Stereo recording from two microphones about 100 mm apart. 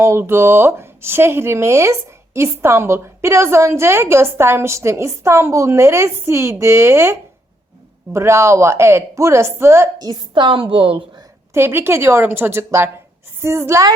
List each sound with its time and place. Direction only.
0.0 s a woman's voice: 25° right (ahead or behind)
10.0 s a woman's voice: 50° right (ahead or behind); by 11.0 s 65° right (ahead or behind)
11.5 s a woman's voice: 25° right (ahead or behind)